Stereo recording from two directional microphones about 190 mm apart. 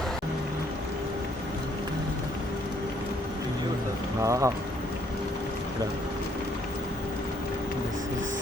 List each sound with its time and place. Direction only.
4.2 s speech: 15° right (ahead or behind)